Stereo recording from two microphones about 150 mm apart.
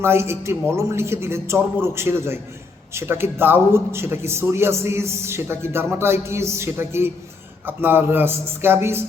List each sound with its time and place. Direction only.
0.0 s a man's voice: 15° right (ahead or behind)